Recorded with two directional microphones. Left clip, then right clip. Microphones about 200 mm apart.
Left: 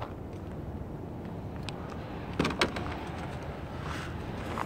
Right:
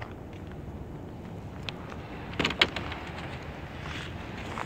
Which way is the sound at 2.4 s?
40° left (ahead or behind).